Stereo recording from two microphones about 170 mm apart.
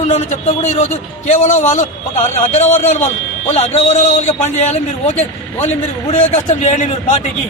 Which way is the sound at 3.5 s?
40° left (ahead or behind).